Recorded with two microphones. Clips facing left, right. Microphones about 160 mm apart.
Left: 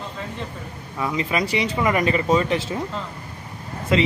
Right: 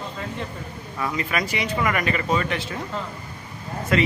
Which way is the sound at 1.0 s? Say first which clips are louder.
Left 3 dB; 20° left (ahead or behind).